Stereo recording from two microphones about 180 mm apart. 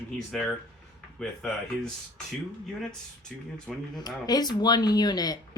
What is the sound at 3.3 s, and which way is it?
Speech, 5° left (ahead or behind).